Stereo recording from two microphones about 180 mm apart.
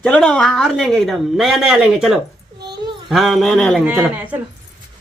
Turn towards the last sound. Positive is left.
turn(degrees=-10)  # may be behind; listen again after turning